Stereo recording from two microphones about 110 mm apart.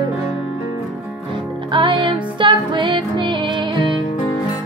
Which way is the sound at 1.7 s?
45° right (ahead or behind).